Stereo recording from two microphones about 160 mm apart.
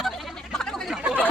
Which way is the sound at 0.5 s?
5° left (ahead or behind).